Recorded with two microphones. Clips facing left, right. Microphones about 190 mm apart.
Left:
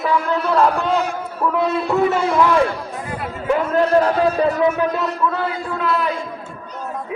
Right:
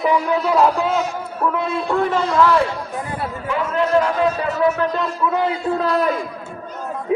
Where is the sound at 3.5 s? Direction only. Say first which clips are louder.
Left 3 dB; 40° left (ahead or behind).